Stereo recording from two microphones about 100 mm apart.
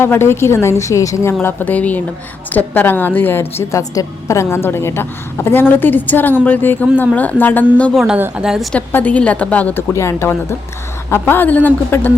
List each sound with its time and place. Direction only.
0.0 s a woman's voice: 25° left (ahead or behind)
3.6 s a woman's voice: 30° left (ahead or behind); by 7.9 s 15° left (ahead or behind)
7.9 s speech: 5° right (ahead or behind)
8.9 s a woman's voice: 15° left (ahead or behind)
9.9 s a woman's voice: 30° left (ahead or behind)